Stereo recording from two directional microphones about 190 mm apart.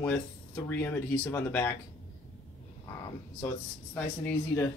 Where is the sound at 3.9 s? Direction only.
10° left (ahead or behind).